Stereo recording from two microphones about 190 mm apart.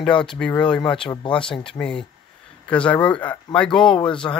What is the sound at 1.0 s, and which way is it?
Speech, 25° left (ahead or behind).